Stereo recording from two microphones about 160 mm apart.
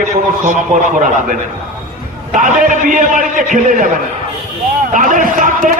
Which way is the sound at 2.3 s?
55° right (ahead or behind).